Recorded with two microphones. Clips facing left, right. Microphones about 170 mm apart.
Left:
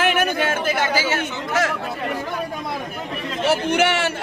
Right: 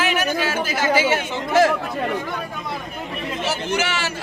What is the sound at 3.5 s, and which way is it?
Speech, 60° left (ahead or behind).